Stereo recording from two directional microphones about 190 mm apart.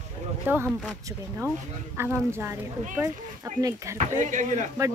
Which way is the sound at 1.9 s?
15° right (ahead or behind).